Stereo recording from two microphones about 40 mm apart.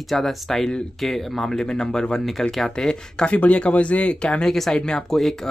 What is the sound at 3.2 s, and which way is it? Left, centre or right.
Speech, left.